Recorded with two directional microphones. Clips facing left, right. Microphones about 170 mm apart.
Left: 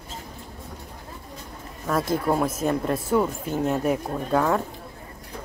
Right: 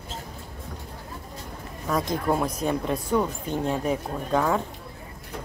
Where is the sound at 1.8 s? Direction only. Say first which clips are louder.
Left 2 dB; 5° left (ahead or behind).